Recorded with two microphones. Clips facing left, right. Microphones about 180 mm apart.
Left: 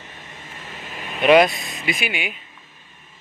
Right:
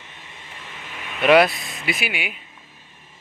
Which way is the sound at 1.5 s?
20° left (ahead or behind).